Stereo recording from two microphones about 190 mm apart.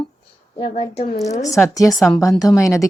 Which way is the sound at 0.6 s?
35° left (ahead or behind).